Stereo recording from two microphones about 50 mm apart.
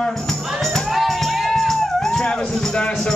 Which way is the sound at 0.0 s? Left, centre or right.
Centre.